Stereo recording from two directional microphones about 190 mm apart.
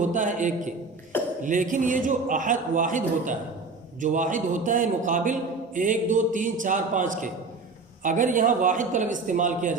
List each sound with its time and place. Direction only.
0.0 s a man's voice: 40° right (ahead or behind)